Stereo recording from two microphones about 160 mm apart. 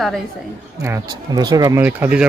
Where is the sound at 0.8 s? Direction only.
20° right (ahead or behind).